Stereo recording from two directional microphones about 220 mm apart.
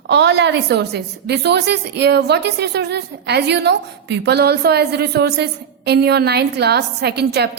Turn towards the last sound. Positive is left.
turn(degrees=-50)  # may be behind; listen again after turning